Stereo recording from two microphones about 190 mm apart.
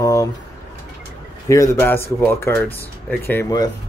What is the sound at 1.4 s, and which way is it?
Speech, 15° left (ahead or behind).